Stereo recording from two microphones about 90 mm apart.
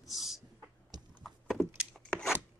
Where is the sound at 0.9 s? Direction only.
50° right (ahead or behind).